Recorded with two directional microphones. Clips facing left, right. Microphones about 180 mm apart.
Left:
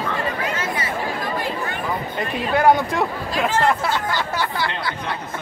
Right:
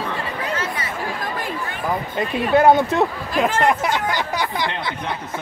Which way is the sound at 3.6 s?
15° right (ahead or behind).